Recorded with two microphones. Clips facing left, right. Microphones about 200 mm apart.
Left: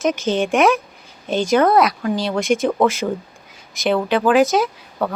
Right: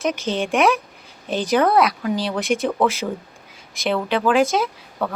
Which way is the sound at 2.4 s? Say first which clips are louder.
Left 3 dB; 30° right (ahead or behind).